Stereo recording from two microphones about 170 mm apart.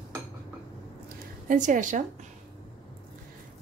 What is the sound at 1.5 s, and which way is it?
Speech, 50° right (ahead or behind).